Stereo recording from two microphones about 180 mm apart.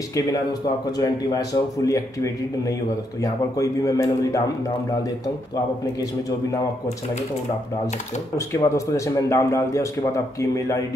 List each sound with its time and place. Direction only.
0.9 s a man's voice: 20° left (ahead or behind)
3.5 s a man's voice: 20° left (ahead or behind)
8.5 s a man's voice: 15° left (ahead or behind)